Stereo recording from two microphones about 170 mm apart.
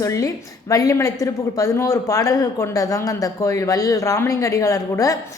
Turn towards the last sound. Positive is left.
turn(degrees=20)  # may be behind; listen again after turning